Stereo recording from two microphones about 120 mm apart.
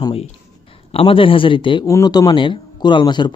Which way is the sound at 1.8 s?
30° left (ahead or behind).